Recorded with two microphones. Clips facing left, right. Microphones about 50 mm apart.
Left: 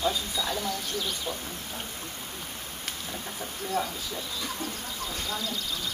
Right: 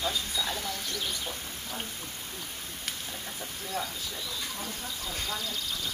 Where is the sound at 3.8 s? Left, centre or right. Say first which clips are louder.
Left 5 dB; left.